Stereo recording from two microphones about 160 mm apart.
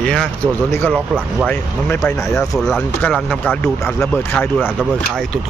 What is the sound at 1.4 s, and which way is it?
Speech, 15° left (ahead or behind).